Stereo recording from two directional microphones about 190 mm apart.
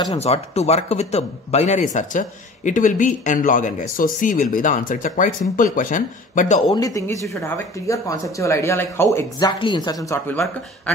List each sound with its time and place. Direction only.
0.2 s a man's voice: 35° left (ahead or behind)
6.7 s speech: 20° left (ahead or behind)